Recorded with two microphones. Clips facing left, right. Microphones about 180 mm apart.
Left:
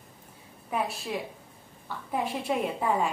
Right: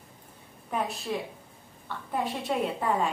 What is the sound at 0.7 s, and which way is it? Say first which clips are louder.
Speech: even; 5° left (ahead or behind).